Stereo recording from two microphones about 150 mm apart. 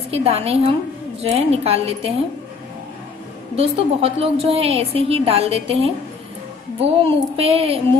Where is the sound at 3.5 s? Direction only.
40° right (ahead or behind).